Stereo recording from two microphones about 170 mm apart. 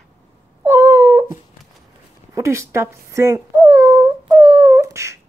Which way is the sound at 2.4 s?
15° right (ahead or behind).